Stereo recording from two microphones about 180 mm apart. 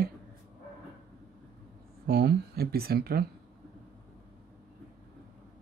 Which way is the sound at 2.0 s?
60° right (ahead or behind).